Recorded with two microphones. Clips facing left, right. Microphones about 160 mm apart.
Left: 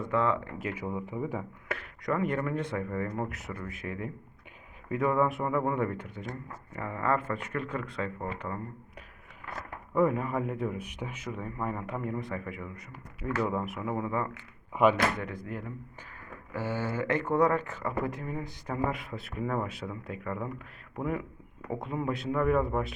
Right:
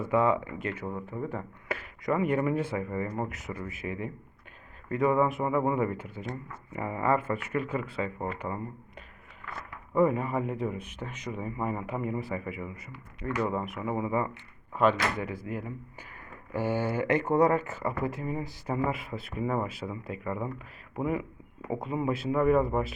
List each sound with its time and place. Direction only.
0.0 s speech: 10° right (ahead or behind)
0.6 s speech: 5° left (ahead or behind)
1.6 s speech: centre (ahead or behind)
9.9 s speech: centre (ahead or behind)
14.7 s speech: 15° left (ahead or behind)
15.2 s speech: 5° right (ahead or behind)